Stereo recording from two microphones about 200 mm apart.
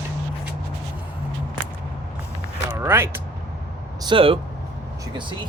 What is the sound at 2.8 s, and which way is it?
Speech, 10° right (ahead or behind).